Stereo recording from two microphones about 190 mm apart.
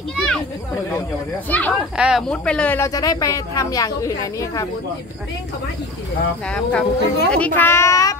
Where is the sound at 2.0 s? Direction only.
Centre (ahead or behind); by 4.7 s 20° left (ahead or behind).